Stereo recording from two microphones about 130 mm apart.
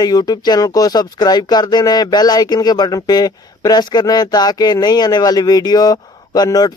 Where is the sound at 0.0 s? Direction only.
30° left (ahead or behind).